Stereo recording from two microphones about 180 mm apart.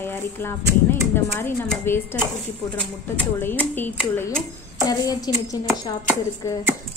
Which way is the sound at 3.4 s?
10° left (ahead or behind).